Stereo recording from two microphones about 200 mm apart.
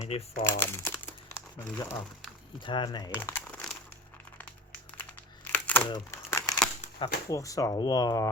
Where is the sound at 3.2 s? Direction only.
10° left (ahead or behind).